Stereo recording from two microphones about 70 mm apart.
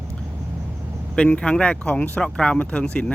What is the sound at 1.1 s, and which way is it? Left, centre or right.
Speech, centre.